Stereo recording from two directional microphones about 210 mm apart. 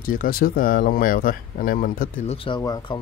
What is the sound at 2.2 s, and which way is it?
Speech, 25° left (ahead or behind).